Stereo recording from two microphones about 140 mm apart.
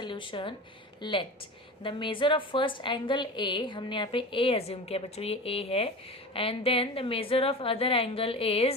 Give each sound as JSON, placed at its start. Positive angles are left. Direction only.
{"t": 0.0, "sound": "a woman's voice", "side_deg": 35}